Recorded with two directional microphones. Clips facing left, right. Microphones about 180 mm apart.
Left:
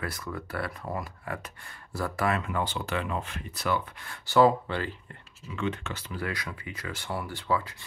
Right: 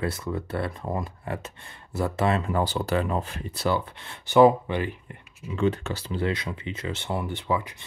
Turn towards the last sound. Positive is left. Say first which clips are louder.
# right 2 dB
turn(degrees=-20)  # may be behind; listen again after turning